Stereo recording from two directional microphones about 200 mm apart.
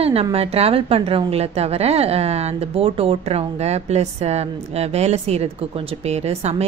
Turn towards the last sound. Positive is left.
turn(degrees=-30)  # may be behind; listen again after turning